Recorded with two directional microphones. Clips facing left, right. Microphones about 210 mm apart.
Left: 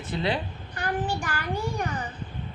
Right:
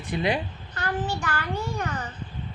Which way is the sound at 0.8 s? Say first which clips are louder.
Even; 15° left (ahead or behind).